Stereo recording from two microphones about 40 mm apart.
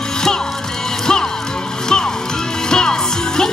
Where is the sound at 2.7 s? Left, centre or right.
Centre.